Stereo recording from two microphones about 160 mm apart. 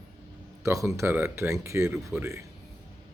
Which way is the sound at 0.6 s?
20° right (ahead or behind).